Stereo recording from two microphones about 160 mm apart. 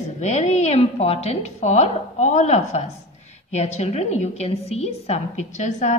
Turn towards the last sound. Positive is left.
turn(degrees=50)  # may be behind; listen again after turning